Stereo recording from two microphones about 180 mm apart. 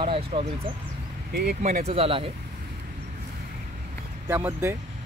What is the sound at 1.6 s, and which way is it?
Speech, 40° right (ahead or behind).